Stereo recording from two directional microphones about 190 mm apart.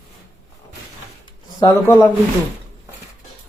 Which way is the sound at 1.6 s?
10° left (ahead or behind).